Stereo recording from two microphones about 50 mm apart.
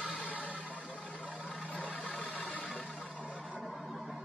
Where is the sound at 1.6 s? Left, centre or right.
Left.